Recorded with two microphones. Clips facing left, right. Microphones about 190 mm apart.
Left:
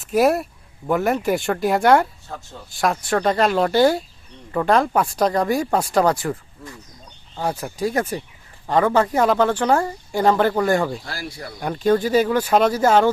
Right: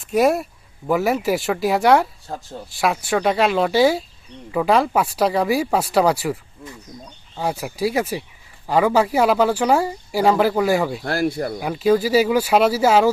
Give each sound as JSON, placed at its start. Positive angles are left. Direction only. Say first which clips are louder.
{"t": 0.0, "sound": "speech", "louder": "even", "side_deg": 0}
{"t": 2.2, "sound": "speech", "louder": "right 4 dB", "side_deg": -35}
{"t": 2.6, "sound": "speech", "louder": "even", "side_deg": -5}
{"t": 11.0, "sound": "speech", "louder": "right 11 dB", "side_deg": -55}
{"t": 11.6, "sound": "speech", "louder": "even", "side_deg": -5}